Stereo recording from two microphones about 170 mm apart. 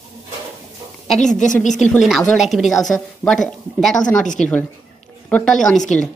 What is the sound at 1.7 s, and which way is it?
A woman's voice, centre (ahead or behind).